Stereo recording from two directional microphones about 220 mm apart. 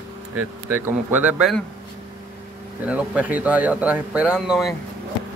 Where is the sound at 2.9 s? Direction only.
5° right (ahead or behind).